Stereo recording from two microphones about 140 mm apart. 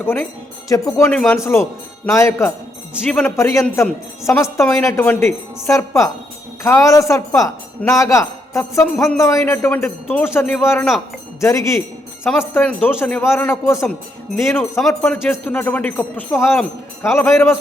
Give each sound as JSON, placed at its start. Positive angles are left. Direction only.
{"t": 0.0, "sound": "a man's voice", "side_deg": 15}
{"t": 1.1, "sound": "a man's voice", "side_deg": 5}
{"t": 1.4, "sound": "a woman's voice", "side_deg": 20}
{"t": 3.1, "sound": "a man's voice", "side_deg": 10}
{"t": 3.3, "sound": "a woman's voice", "side_deg": 20}